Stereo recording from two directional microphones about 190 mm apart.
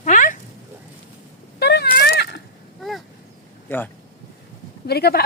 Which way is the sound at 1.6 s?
60° left (ahead or behind).